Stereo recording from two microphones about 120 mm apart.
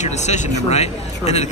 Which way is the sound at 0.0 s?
70° left (ahead or behind).